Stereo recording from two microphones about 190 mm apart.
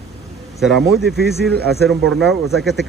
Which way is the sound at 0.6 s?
Centre (ahead or behind).